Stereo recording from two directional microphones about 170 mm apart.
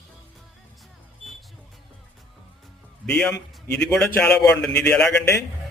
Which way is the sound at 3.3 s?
20° left (ahead or behind).